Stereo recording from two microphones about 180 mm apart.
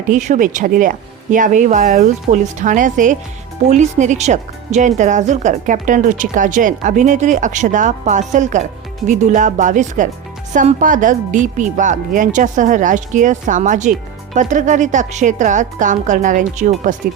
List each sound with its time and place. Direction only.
0.1 s speech: 45° right (ahead or behind)